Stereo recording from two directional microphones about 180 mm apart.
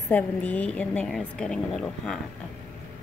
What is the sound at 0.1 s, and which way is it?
A woman's voice, 10° left (ahead or behind).